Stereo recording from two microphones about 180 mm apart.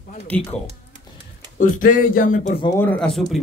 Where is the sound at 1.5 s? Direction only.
50° left (ahead or behind).